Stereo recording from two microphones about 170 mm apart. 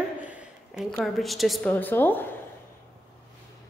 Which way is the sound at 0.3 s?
5° right (ahead or behind).